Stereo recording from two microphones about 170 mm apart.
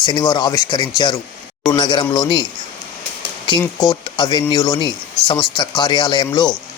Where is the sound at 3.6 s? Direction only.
20° left (ahead or behind).